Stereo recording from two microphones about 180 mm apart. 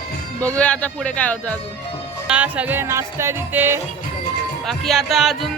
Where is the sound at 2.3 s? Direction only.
5° right (ahead or behind).